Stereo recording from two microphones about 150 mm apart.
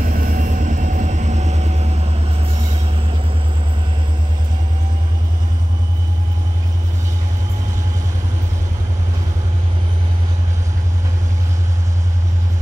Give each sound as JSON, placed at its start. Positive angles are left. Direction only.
{"t": 0.0, "sound": "train", "side_deg": -70}